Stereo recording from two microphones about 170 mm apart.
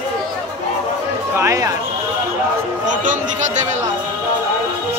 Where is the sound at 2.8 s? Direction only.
50° right (ahead or behind).